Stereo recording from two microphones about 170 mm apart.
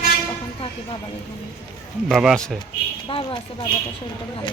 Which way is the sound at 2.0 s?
5° right (ahead or behind).